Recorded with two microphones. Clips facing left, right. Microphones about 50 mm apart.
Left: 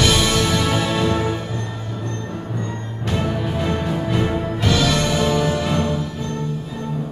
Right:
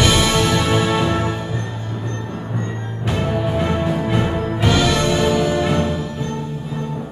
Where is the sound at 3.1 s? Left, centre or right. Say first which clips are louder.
Right 2 dB; centre.